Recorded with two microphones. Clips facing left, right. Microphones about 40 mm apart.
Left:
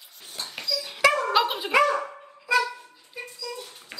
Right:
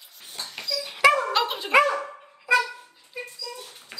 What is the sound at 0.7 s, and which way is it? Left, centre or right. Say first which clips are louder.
Dog: right 2 dB; centre.